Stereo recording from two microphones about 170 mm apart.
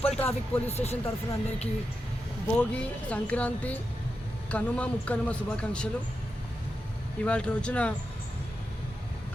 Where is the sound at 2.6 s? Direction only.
10° left (ahead or behind).